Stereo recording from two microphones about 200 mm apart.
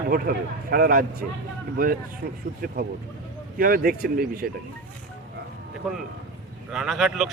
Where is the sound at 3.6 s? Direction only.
45° right (ahead or behind).